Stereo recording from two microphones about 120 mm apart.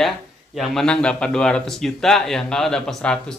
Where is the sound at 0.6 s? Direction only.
5° left (ahead or behind).